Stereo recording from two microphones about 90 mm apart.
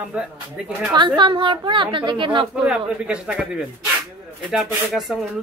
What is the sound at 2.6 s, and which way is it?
Speech, 10° right (ahead or behind).